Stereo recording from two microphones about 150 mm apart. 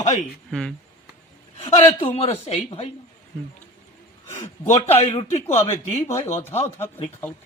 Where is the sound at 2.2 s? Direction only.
45° left (ahead or behind).